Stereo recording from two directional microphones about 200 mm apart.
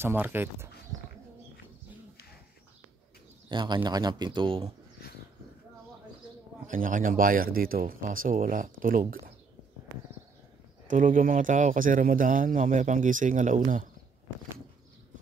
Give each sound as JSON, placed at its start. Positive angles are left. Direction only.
{"t": 0.0, "sound": "speech", "side_deg": -10}
{"t": 3.4, "sound": "a man's voice", "side_deg": -20}
{"t": 6.7, "sound": "speech", "side_deg": -40}
{"t": 10.9, "sound": "speech", "side_deg": -40}